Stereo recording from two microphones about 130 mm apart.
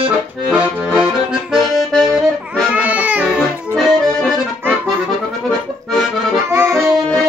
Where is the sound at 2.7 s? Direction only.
10° right (ahead or behind).